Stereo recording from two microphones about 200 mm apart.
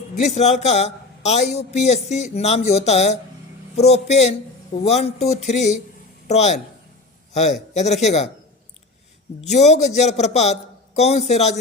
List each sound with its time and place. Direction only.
0.2 s a man's voice: 35° left (ahead or behind)
9.5 s a man's voice: 35° left (ahead or behind)